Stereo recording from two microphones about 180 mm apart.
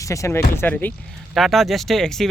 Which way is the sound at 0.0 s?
15° left (ahead or behind).